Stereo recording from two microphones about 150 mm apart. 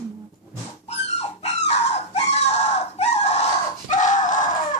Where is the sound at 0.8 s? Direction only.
45° left (ahead or behind).